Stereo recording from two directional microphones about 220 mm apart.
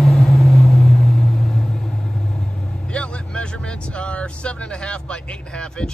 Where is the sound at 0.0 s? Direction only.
Centre (ahead or behind).